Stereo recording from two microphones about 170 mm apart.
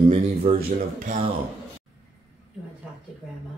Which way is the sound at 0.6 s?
60° right (ahead or behind).